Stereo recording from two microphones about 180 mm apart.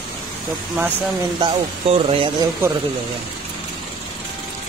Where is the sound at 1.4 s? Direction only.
30° right (ahead or behind).